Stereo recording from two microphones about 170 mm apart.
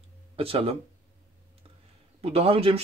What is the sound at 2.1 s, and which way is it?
Speech, 35° right (ahead or behind).